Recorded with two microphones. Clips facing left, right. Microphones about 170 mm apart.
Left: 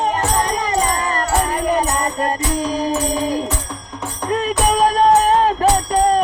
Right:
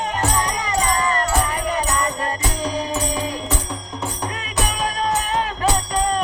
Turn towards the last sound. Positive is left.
turn(degrees=35)  # may be behind; listen again after turning